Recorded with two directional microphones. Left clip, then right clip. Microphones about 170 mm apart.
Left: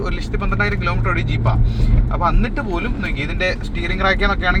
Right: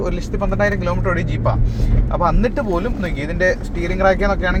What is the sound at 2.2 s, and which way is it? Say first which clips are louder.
Speech: right 2 dB; 40° right (ahead or behind).